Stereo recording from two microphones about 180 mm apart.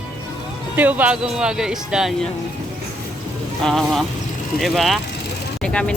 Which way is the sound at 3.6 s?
Centre (ahead or behind).